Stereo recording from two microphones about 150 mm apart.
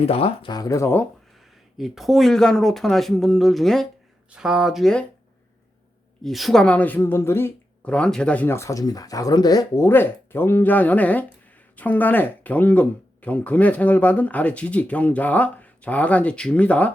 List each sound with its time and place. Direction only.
0.0 s speech: 40° left (ahead or behind)
0.5 s speech: 25° left (ahead or behind)
1.8 s speech: centre (ahead or behind)
6.2 s speech: centre (ahead or behind)